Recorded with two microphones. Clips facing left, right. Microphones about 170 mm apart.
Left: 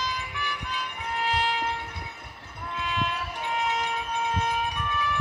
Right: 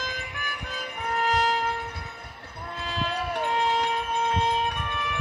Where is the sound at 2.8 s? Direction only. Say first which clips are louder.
Even; 35° right (ahead or behind).